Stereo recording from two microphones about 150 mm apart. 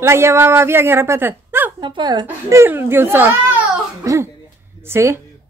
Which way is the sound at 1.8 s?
30° right (ahead or behind).